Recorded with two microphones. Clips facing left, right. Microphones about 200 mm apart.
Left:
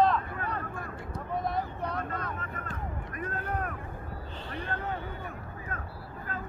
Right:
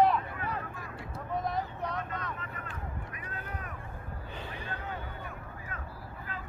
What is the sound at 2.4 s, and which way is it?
Vehicle, 45° left (ahead or behind).